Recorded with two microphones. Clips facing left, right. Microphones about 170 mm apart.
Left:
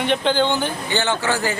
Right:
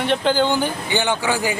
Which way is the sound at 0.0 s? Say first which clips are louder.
Right 1 dB; 5° right (ahead or behind).